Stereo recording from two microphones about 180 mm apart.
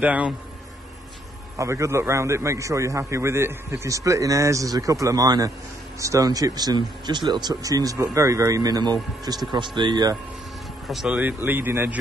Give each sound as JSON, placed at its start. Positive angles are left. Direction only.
{"t": 0.0, "sound": "a man's voice", "side_deg": -10}
{"t": 1.6, "sound": "a man's voice", "side_deg": -15}
{"t": 10.9, "sound": "a man's voice", "side_deg": -5}